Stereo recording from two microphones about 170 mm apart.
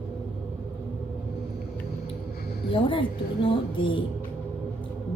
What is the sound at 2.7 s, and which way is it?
A woman's voice, 30° left (ahead or behind).